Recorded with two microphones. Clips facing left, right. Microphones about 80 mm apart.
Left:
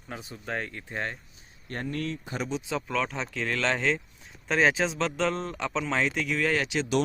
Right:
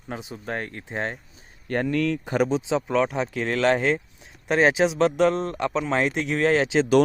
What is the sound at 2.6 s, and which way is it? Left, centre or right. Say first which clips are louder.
Speech: right 7 dB; right.